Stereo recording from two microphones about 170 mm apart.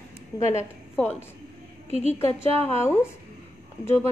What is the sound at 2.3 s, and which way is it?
Speech, 35° right (ahead or behind).